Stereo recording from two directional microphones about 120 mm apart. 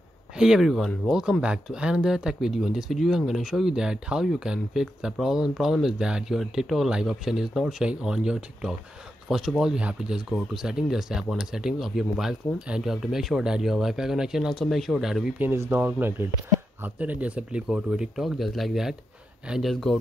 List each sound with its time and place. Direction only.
0.4 s speech: 5° right (ahead or behind)
15.3 s speech: 15° right (ahead or behind); by 20.0 s 5° left (ahead or behind)